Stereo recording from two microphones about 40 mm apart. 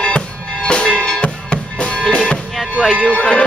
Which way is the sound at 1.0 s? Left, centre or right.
Left.